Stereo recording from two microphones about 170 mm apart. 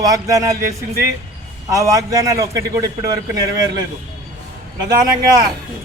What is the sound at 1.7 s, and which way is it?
A man's voice, 20° right (ahead or behind).